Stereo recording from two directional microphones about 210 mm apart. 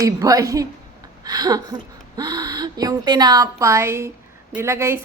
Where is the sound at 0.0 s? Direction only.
15° right (ahead or behind).